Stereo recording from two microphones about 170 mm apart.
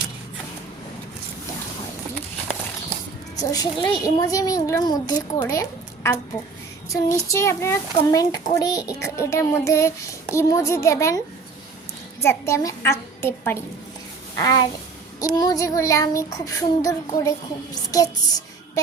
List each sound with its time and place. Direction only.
3.5 s child singing: 25° left (ahead or behind)
6.9 s a child's voice: 20° left (ahead or behind)
12.2 s a child's voice: 15° left (ahead or behind)
14.3 s child singing: 25° left (ahead or behind)
17.9 s a child's voice: 20° left (ahead or behind)